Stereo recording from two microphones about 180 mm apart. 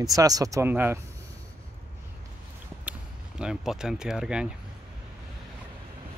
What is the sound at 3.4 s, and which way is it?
Speech, 5° right (ahead or behind).